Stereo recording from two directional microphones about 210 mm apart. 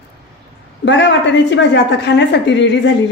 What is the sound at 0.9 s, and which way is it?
A woman's voice, 60° left (ahead or behind).